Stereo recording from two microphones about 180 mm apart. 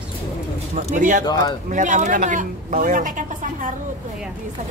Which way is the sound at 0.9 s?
45° right (ahead or behind).